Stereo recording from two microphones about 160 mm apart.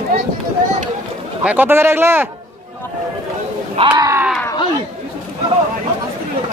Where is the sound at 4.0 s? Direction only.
20° right (ahead or behind).